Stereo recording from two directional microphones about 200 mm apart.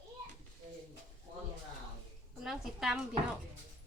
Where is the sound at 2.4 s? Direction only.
Centre (ahead or behind).